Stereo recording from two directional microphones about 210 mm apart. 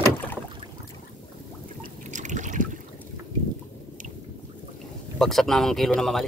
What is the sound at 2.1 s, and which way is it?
Trickle, 35° right (ahead or behind).